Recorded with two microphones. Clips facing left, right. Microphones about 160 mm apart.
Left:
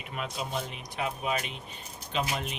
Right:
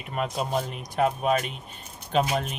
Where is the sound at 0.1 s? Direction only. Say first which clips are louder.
Right 7 dB; 50° right (ahead or behind).